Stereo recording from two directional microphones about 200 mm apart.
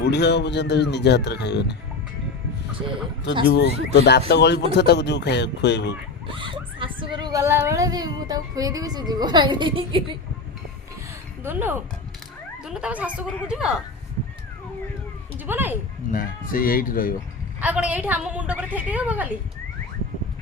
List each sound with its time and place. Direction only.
0.0 s speech: 60° left (ahead or behind)
3.4 s speech: 55° left (ahead or behind)
6.2 s speech: 25° right (ahead or behind)
11.4 s a woman's voice: 10° right (ahead or behind)
15.4 s a woman's voice: 10° right (ahead or behind)
16.1 s speech: 45° left (ahead or behind)
17.6 s a woman's voice: 5° right (ahead or behind)